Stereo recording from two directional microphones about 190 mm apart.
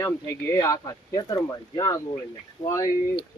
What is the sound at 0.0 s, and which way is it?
Speech, 15° left (ahead or behind).